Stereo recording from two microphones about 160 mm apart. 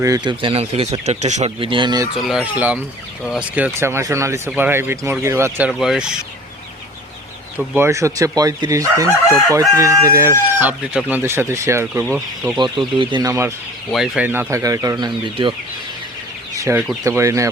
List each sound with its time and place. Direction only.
0.0 s speech: 25° right (ahead or behind); by 1.5 s 45° right (ahead or behind)
1.5 s speech: 30° right (ahead or behind)
2.1 s speech: 5° right (ahead or behind)
3.2 s chicken: 5° right (ahead or behind)
5.8 s speech: 5° right (ahead or behind)
7.7 s speech: 15° right (ahead or behind)
9.5 s chicken: 20° right (ahead or behind)
12.5 s speech: 30° right (ahead or behind)
13.9 s speech: centre (ahead or behind); by 15.5 s 30° right (ahead or behind)
16.6 s speech: 15° right (ahead or behind)